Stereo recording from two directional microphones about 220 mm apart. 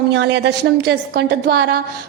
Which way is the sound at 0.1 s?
50° right (ahead or behind).